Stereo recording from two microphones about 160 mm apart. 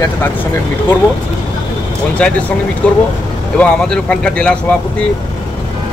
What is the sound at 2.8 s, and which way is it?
Speech, 10° left (ahead or behind).